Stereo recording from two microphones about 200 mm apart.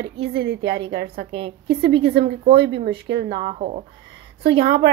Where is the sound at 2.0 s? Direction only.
55° right (ahead or behind).